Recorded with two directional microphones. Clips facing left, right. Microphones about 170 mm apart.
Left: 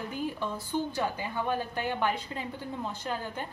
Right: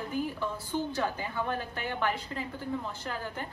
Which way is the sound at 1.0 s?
15° left (ahead or behind).